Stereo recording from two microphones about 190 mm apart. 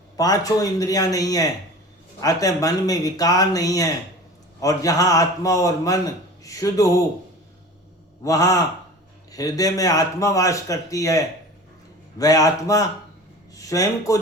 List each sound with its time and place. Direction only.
0.2 s speech: 20° left (ahead or behind)
8.2 s speech: 20° left (ahead or behind)
12.2 s speech: 20° left (ahead or behind)